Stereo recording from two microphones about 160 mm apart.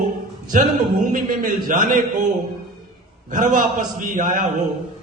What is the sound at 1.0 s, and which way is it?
A man's voice, 55° right (ahead or behind).